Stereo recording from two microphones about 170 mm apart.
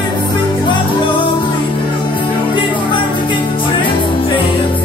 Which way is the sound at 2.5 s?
30° left (ahead or behind).